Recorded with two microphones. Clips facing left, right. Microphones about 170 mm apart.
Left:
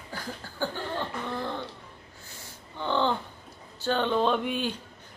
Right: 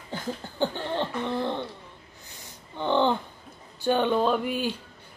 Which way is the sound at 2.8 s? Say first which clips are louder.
Right 3 dB; 15° right (ahead or behind).